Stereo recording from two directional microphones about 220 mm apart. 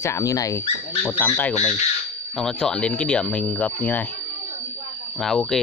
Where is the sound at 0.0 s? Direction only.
15° left (ahead or behind).